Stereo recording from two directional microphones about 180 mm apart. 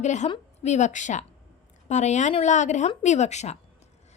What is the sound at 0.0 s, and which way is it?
A woman's voice, 40° left (ahead or behind).